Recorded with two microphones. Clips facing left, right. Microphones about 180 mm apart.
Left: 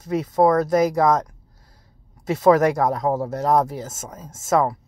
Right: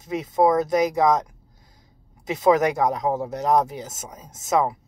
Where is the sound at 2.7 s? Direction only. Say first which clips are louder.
Left 2 dB; 20° right (ahead or behind).